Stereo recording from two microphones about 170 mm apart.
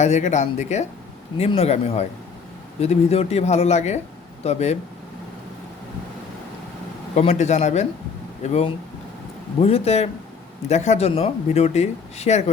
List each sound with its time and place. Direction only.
0.0 s speech: 45° left (ahead or behind)
7.2 s speech: 40° left (ahead or behind)